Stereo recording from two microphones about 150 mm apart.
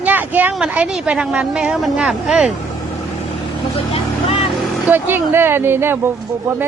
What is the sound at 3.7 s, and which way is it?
Vehicle, 40° left (ahead or behind).